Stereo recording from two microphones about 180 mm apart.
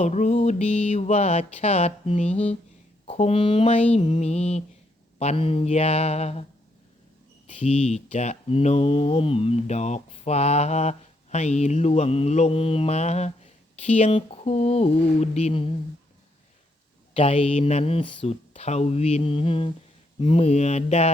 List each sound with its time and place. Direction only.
0.0 s speech: 40° left (ahead or behind)
7.4 s speech: 35° left (ahead or behind)
17.2 s speech: 30° left (ahead or behind)